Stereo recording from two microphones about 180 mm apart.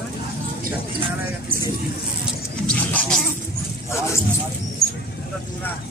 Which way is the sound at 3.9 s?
15° left (ahead or behind).